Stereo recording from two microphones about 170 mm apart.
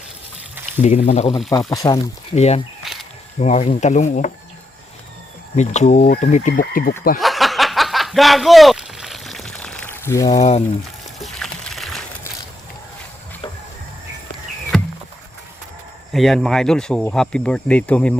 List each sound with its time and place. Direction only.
0.8 s speech: 40° left (ahead or behind)
1.5 s speech: 20° left (ahead or behind)
2.3 s speech: 40° left (ahead or behind)
2.8 s snake: centre (ahead or behind)
3.4 s speech: 40° left (ahead or behind)
5.5 s speech: 45° left (ahead or behind)
7.2 s a sound: centre (ahead or behind); by 10.4 s 20° left (ahead or behind)
11.2 s pour: centre (ahead or behind)
16.1 s speech: centre (ahead or behind)